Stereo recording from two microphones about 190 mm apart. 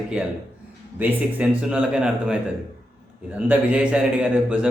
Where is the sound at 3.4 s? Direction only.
5° right (ahead or behind).